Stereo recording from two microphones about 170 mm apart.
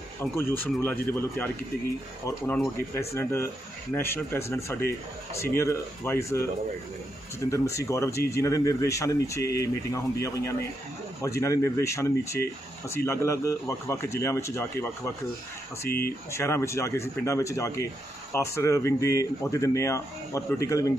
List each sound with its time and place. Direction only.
0.2 s speech: 15° left (ahead or behind)
15.9 s speech: 60° left (ahead or behind)
16.3 s speech: 15° left (ahead or behind)